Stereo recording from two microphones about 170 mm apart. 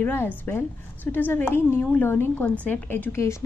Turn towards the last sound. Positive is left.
turn(degrees=15)  # may be behind; listen again after turning